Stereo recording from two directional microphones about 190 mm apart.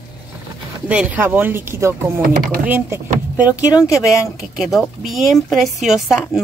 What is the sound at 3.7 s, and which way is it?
Speech, 15° left (ahead or behind).